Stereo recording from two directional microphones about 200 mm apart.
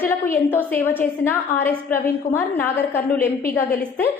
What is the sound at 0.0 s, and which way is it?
A woman's voice, 10° left (ahead or behind).